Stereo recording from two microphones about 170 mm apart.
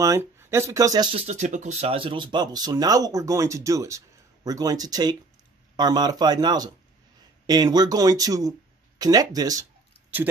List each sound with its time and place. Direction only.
0.0 s speech: 15° right (ahead or behind)
1.1 s speech: 40° right (ahead or behind); by 9.7 s 20° right (ahead or behind)